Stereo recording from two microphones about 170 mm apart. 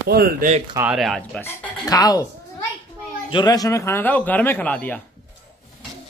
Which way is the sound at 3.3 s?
25° left (ahead or behind).